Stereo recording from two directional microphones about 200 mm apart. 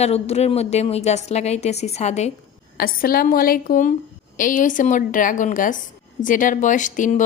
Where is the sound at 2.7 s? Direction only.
45° left (ahead or behind).